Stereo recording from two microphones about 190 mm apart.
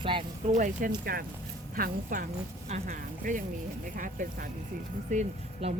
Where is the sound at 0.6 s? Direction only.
45° right (ahead or behind).